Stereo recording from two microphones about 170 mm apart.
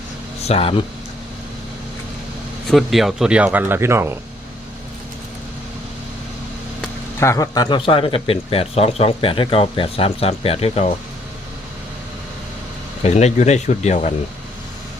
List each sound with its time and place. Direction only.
0.4 s speech: 35° left (ahead or behind)
2.6 s speech: centre (ahead or behind)
7.2 s speech: 15° left (ahead or behind); by 10.9 s 40° left (ahead or behind)
13.0 s speech: 40° left (ahead or behind)